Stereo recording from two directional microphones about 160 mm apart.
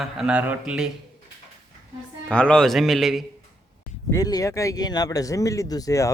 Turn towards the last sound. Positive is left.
turn(degrees=20)  # may be behind; listen again after turning